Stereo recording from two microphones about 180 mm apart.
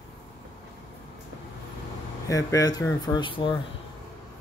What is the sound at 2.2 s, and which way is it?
Speech, 20° left (ahead or behind).